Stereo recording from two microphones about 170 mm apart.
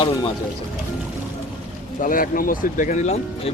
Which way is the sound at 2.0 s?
55° left (ahead or behind).